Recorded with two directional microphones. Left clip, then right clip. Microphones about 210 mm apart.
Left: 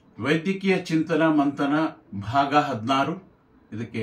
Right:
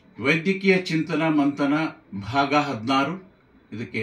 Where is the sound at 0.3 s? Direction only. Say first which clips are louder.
Right 3 dB; 20° left (ahead or behind).